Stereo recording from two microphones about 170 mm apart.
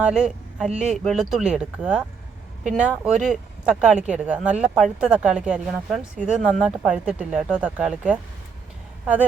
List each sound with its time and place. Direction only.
0.0 s speech: 5° right (ahead or behind)